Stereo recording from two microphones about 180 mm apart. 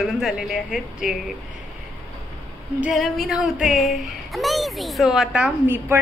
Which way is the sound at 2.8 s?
Centre (ahead or behind).